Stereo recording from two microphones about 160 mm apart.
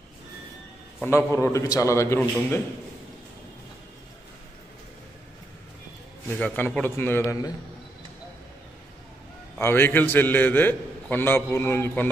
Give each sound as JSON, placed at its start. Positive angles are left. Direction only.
{"t": 1.0, "sound": "a man's voice", "side_deg": 15}
{"t": 6.3, "sound": "a man's voice", "side_deg": 10}
{"t": 9.6, "sound": "a man's voice", "side_deg": 15}